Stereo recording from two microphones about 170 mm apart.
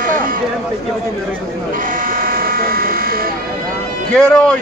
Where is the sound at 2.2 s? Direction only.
60° right (ahead or behind).